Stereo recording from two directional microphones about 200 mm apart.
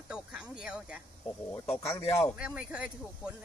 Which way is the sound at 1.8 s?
30° left (ahead or behind).